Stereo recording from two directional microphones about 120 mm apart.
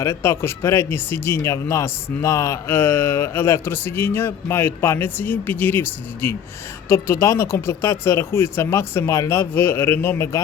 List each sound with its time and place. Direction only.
0.0 s speech: 25° left (ahead or behind)